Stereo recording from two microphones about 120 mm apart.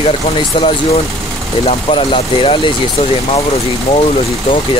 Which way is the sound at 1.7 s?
50° left (ahead or behind).